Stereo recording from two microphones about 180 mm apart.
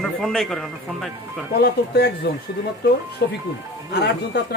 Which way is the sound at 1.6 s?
65° left (ahead or behind).